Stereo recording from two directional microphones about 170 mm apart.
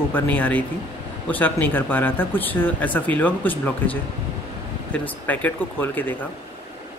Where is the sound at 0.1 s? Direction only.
10° left (ahead or behind).